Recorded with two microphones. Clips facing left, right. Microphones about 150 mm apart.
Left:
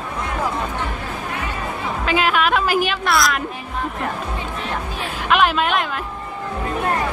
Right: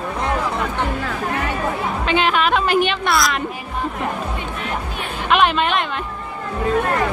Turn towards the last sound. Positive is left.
turn(degrees=5)  # may be behind; listen again after turning